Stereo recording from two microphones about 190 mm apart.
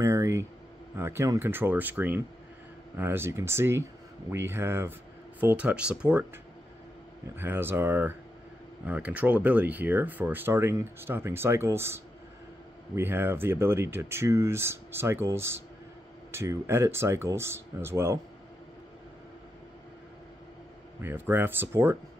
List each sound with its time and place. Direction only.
0.0 s speech: 15° right (ahead or behind)
7.3 s speech: 10° right (ahead or behind)
21.0 s speech: 10° right (ahead or behind)